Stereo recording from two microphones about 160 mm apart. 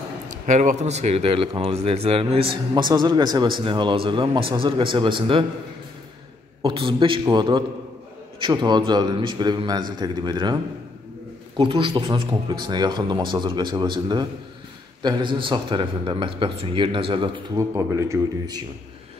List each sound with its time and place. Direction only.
0.5 s a man's voice: 50° right (ahead or behind)
2.7 s a man's voice: 25° right (ahead or behind)
6.6 s a man's voice: 35° right (ahead or behind)
17.6 s a man's voice: 20° right (ahead or behind)